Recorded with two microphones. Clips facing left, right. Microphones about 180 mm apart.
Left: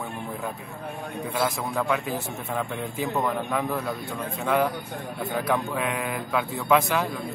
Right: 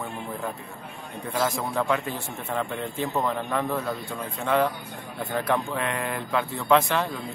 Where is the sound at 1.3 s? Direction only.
Centre (ahead or behind).